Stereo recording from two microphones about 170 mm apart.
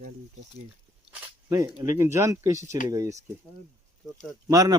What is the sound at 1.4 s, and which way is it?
Speech, 20° right (ahead or behind).